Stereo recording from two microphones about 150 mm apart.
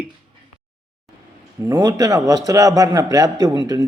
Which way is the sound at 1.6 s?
25° right (ahead or behind).